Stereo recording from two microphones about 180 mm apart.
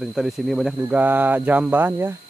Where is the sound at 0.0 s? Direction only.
Centre (ahead or behind).